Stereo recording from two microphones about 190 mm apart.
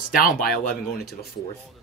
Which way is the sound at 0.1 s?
50° left (ahead or behind).